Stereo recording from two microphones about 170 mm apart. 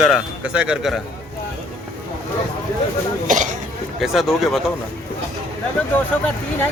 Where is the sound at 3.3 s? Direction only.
50° right (ahead or behind).